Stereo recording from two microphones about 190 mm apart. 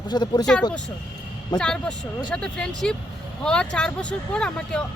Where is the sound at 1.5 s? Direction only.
5° left (ahead or behind).